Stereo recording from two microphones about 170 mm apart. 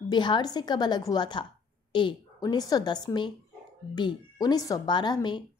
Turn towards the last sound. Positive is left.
turn(degrees=25)  # may be behind; listen again after turning